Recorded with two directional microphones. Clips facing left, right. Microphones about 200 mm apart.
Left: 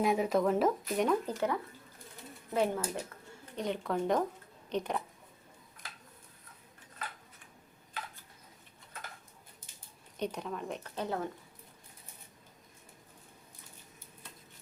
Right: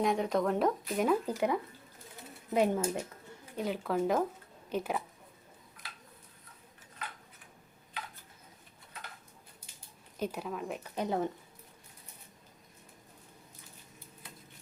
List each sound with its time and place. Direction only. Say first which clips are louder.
0.0 s speech: left 1 dB; 5° left (ahead or behind); by 3.0 s 15° right (ahead or behind)
3.5 s speech: right 1 dB; 5° right (ahead or behind)
10.2 s speech: right 1 dB; 5° right (ahead or behind)